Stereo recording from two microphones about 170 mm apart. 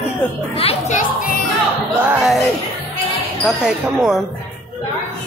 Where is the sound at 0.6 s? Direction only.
40° left (ahead or behind).